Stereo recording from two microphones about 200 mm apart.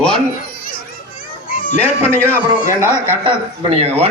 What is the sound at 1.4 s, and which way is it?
Cat, 45° left (ahead or behind).